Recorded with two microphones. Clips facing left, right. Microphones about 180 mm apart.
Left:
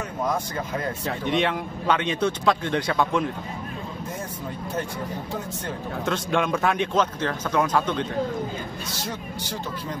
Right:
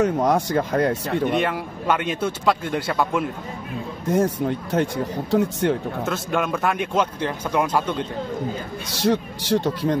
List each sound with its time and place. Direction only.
0.0 s speech: 75° right (ahead or behind)
1.4 s a man's voice: 5° right (ahead or behind)
4.1 s speech: 75° right (ahead or behind)
6.0 s a man's voice: 5° right (ahead or behind)
8.9 s speech: 70° right (ahead or behind)